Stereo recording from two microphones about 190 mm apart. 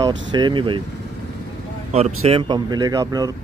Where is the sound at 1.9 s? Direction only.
35° right (ahead or behind); by 3.3 s 20° right (ahead or behind).